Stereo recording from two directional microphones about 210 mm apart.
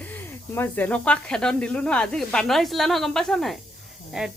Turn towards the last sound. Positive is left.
turn(degrees=0)  # may be behind; listen again after turning